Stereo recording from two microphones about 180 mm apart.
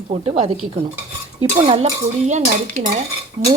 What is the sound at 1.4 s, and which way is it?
Frying, 30° right (ahead or behind).